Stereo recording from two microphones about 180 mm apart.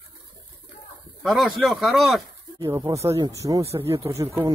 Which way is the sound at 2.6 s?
20° right (ahead or behind).